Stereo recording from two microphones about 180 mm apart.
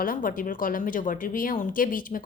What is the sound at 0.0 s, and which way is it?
Speech, 50° left (ahead or behind).